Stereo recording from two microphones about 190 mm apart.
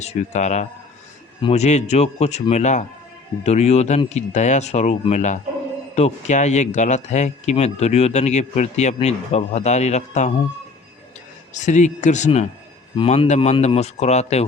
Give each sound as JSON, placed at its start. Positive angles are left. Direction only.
{"t": 0.0, "sound": "speech", "side_deg": 35}
{"t": 11.5, "sound": "speech", "side_deg": 40}